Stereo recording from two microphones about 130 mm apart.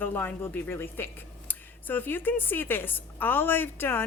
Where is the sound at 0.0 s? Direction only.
15° left (ahead or behind).